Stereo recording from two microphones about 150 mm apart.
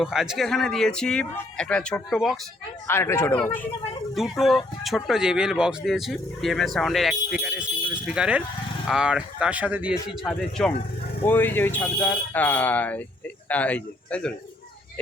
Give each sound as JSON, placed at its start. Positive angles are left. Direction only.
{"t": 0.0, "sound": "speech", "side_deg": -5}
{"t": 2.8, "sound": "speech", "side_deg": 20}
{"t": 4.1, "sound": "speech", "side_deg": 0}
{"t": 10.6, "sound": "speech", "side_deg": 5}